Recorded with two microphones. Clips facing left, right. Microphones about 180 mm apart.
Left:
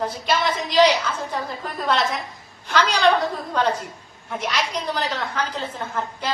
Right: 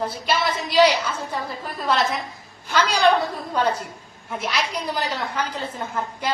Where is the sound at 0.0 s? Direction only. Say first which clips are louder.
Left 1 dB; 5° right (ahead or behind).